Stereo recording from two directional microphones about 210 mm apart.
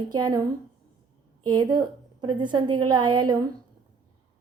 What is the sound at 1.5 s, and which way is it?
A woman's voice, 20° right (ahead or behind).